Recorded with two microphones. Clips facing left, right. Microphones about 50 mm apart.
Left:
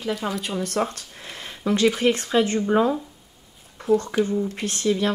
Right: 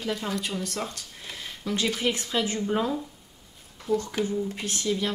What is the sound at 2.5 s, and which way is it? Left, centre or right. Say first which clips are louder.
Speech: left 6 dB; left.